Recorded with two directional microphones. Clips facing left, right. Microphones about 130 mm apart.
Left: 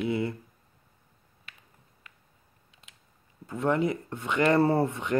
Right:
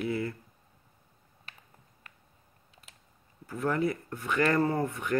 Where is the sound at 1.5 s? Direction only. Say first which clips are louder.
Right 1 dB; 40° right (ahead or behind).